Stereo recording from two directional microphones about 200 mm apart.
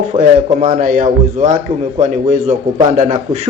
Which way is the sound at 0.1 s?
40° right (ahead or behind).